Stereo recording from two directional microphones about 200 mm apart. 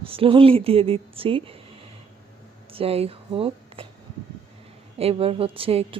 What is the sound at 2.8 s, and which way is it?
Speech, 30° right (ahead or behind).